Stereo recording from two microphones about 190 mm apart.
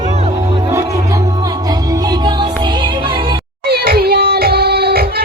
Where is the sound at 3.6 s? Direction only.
55° right (ahead or behind).